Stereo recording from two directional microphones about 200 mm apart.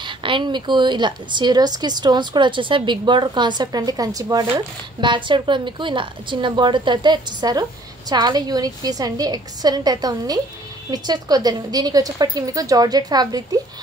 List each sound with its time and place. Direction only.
0.0 s a woman's voice: 25° right (ahead or behind)